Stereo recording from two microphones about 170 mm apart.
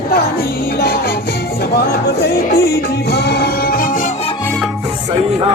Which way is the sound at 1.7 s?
70° left (ahead or behind).